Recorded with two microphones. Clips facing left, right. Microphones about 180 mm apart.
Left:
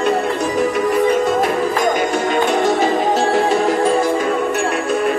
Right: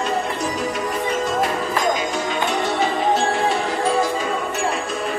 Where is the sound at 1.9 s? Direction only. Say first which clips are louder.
Left 6 dB; 50° left (ahead or behind).